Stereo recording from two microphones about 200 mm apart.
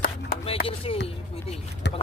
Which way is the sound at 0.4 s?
30° left (ahead or behind).